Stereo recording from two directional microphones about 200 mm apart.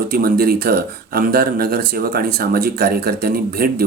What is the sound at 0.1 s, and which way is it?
Speech, 50° right (ahead or behind).